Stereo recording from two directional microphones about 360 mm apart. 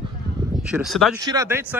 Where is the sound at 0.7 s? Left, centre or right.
Centre.